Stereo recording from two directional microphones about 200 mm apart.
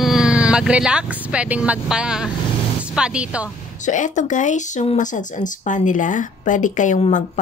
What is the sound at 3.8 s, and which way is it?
Speech, 40° left (ahead or behind).